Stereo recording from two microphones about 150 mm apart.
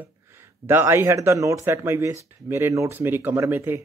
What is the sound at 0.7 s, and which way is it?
Speech, 15° right (ahead or behind).